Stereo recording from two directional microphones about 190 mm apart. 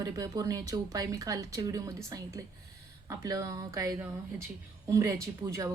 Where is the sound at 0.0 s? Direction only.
20° right (ahead or behind).